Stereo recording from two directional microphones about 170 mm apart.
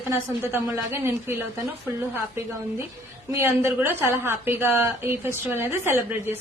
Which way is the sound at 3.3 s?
15° right (ahead or behind).